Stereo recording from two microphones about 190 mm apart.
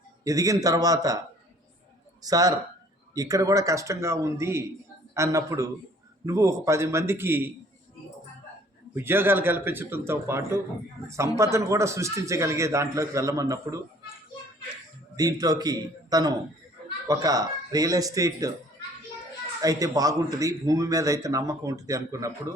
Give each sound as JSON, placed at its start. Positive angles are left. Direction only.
{"t": 0.3, "sound": "speech", "side_deg": -20}
{"t": 2.2, "sound": "speech", "side_deg": -20}
{"t": 9.0, "sound": "speech", "side_deg": -10}
{"t": 15.1, "sound": "speech", "side_deg": -20}
{"t": 19.6, "sound": "speech", "side_deg": -20}